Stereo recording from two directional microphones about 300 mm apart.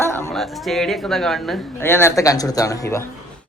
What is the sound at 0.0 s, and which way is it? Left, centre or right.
A woman's voice, centre.